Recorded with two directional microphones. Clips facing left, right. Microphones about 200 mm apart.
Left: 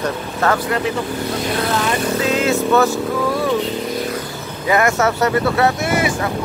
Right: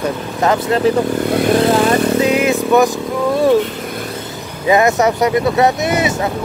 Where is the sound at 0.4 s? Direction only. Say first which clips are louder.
Right 3 dB; 20° right (ahead or behind).